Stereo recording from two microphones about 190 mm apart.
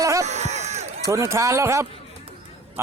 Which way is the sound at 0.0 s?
15° right (ahead or behind).